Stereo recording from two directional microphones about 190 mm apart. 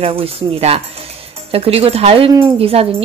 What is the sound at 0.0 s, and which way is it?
Speech, 30° right (ahead or behind).